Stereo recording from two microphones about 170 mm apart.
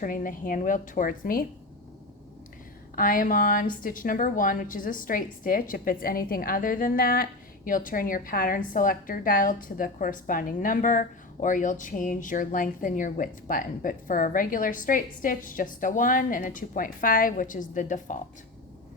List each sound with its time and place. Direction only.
0.0 s a woman's voice: 50° left (ahead or behind)
2.9 s a woman's voice: 55° left (ahead or behind)